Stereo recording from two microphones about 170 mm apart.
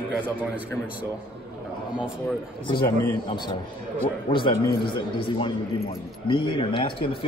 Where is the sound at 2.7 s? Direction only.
25° left (ahead or behind).